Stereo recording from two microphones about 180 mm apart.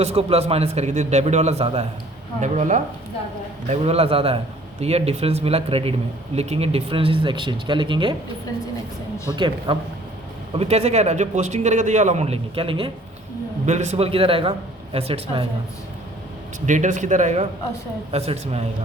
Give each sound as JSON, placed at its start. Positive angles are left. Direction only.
{"t": 0.0, "sound": "a man's voice", "side_deg": -35}
{"t": 9.3, "sound": "a man's voice", "side_deg": -25}
{"t": 16.6, "sound": "a man's voice", "side_deg": -45}